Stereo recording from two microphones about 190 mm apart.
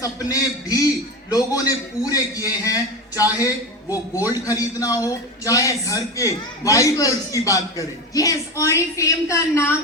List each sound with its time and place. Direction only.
0.0 s a man's voice: 20° left (ahead or behind)